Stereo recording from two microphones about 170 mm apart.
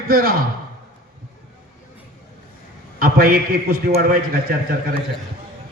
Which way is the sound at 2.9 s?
60° right (ahead or behind).